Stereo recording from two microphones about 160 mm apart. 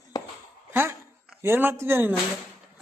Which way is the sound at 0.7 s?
15° right (ahead or behind).